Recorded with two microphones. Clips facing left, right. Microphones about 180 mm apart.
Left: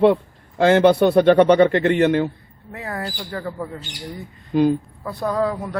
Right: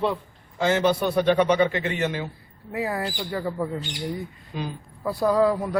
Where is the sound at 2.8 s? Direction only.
5° right (ahead or behind).